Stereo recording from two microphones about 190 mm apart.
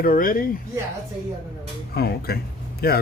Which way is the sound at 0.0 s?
50° left (ahead or behind).